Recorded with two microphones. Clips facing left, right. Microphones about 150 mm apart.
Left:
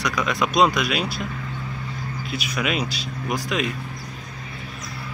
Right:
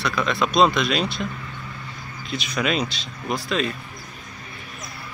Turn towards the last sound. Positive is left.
turn(degrees=15)  # may be behind; listen again after turning